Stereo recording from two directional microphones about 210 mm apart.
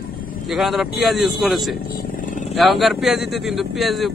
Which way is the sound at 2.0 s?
40° left (ahead or behind).